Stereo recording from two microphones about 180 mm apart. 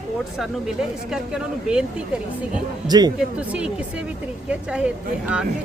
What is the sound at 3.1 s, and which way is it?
Speech, 5° right (ahead or behind).